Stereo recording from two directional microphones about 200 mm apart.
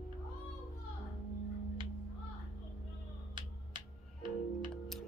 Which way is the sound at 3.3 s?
25° right (ahead or behind).